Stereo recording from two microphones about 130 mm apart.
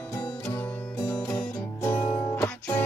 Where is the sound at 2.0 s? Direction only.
40° left (ahead or behind).